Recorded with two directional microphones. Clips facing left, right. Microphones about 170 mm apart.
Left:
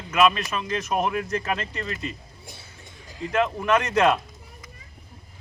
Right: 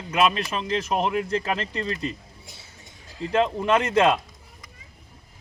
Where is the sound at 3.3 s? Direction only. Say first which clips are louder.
Right 1 dB; 30° right (ahead or behind).